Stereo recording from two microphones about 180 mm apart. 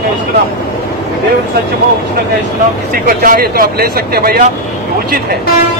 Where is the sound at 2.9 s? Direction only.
55° right (ahead or behind).